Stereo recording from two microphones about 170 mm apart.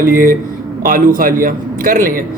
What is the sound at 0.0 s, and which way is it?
A man's voice, 55° right (ahead or behind).